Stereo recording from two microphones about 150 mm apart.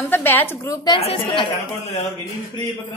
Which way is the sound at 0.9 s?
40° left (ahead or behind).